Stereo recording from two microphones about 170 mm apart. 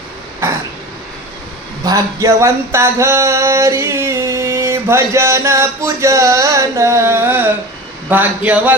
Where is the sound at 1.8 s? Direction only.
20° right (ahead or behind).